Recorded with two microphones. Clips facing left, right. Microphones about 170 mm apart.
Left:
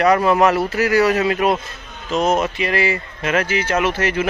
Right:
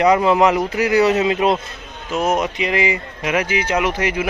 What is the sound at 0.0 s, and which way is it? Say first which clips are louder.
Speech: right 1 dB; 20° right (ahead or behind).